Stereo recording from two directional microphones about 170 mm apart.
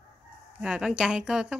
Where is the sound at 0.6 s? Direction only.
5° right (ahead or behind).